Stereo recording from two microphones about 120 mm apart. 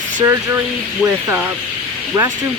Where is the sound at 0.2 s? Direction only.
20° right (ahead or behind).